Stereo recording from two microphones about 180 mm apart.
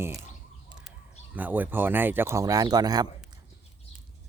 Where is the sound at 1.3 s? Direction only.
10° right (ahead or behind).